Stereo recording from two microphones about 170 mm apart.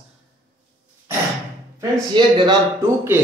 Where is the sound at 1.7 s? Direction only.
25° right (ahead or behind).